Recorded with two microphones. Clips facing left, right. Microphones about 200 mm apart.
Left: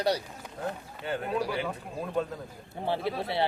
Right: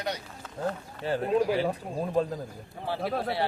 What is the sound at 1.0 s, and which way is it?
Speech, 35° right (ahead or behind).